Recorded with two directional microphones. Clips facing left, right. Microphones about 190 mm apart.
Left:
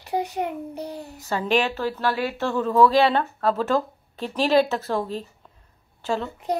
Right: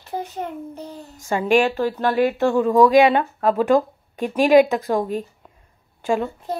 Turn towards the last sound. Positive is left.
turn(degrees=15)  # may be behind; listen again after turning